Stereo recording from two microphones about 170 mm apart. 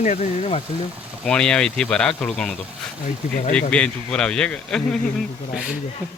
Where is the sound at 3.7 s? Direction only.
5° left (ahead or behind).